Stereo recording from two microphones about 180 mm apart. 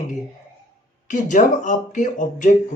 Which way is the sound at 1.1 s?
45° left (ahead or behind).